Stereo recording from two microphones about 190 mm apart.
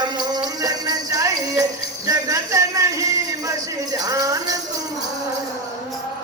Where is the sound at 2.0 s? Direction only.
20° right (ahead or behind).